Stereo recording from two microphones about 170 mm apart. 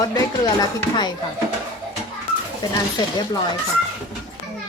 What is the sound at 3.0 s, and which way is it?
Speech, 25° left (ahead or behind).